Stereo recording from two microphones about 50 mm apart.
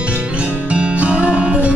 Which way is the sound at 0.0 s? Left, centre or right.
Right.